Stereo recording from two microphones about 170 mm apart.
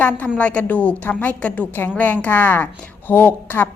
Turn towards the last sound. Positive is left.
turn(degrees=10)  # may be behind; listen again after turning